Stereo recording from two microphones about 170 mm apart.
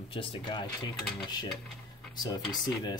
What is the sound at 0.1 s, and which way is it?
Speech, 30° left (ahead or behind).